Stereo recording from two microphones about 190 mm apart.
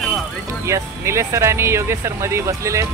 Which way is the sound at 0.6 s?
15° right (ahead or behind).